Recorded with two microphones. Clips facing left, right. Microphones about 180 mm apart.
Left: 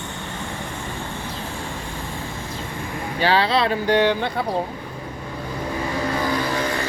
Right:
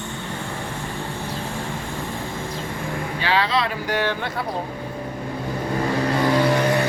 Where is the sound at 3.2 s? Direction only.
30° left (ahead or behind).